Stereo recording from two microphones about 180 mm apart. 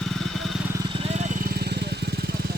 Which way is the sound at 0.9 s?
35° right (ahead or behind).